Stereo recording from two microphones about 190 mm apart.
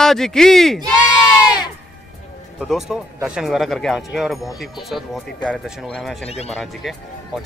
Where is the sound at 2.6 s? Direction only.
Centre (ahead or behind).